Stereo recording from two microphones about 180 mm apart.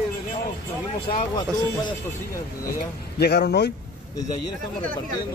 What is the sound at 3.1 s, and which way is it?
Speech, 60° left (ahead or behind).